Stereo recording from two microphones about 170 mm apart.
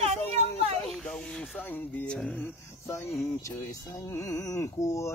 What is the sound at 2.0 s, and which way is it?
Speech, 5° left (ahead or behind).